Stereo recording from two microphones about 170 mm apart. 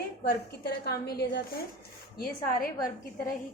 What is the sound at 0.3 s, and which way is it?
A woman's voice, 70° left (ahead or behind).